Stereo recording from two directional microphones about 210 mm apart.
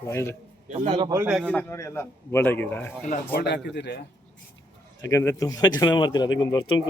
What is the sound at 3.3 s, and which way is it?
Speech, 50° left (ahead or behind).